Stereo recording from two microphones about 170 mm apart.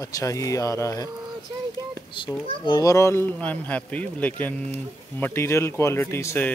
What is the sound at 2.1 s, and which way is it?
A child's voice, 30° left (ahead or behind).